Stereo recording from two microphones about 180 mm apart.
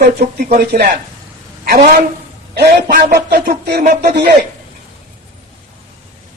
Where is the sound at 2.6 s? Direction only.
65° right (ahead or behind).